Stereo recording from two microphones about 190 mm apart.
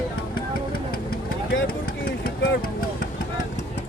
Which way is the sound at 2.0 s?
50° left (ahead or behind).